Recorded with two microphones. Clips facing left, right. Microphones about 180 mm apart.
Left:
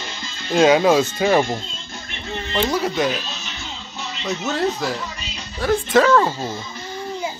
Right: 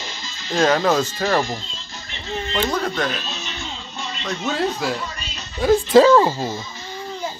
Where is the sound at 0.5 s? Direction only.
10° left (ahead or behind).